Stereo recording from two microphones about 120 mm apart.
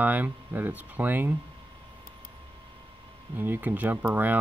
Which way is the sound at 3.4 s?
15° right (ahead or behind).